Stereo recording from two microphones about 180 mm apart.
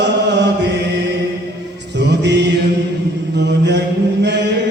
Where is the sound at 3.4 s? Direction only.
75° right (ahead or behind).